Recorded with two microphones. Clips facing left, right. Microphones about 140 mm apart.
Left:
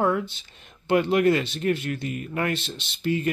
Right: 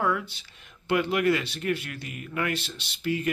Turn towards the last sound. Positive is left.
turn(degrees=25)  # may be behind; listen again after turning